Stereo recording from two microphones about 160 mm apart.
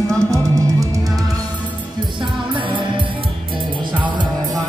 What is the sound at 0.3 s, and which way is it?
Music, 20° right (ahead or behind).